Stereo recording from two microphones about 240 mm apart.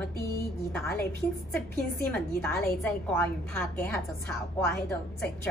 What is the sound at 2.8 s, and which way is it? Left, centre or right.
A woman's voice, centre.